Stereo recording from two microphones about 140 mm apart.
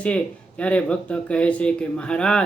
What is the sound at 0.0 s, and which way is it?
Speech, 10° left (ahead or behind).